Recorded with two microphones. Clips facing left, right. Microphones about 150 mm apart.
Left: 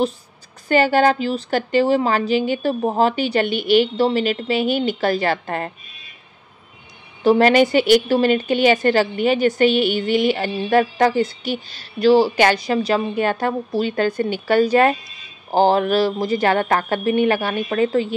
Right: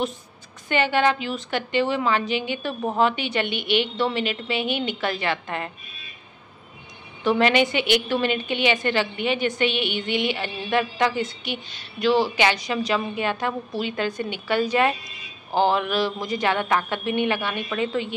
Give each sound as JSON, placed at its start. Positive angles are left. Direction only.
{"t": 0.7, "sound": "a woman's voice", "side_deg": 40}
{"t": 7.2, "sound": "a woman's voice", "side_deg": 40}